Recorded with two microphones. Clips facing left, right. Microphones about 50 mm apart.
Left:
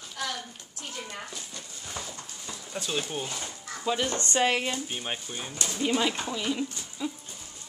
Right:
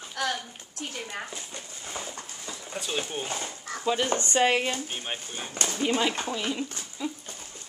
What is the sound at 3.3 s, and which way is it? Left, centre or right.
Speech, right.